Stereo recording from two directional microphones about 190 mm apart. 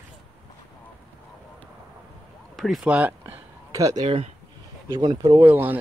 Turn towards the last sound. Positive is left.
turn(degrees=-10)  # may be behind; listen again after turning